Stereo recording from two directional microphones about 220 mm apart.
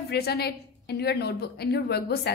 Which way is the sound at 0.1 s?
45° left (ahead or behind).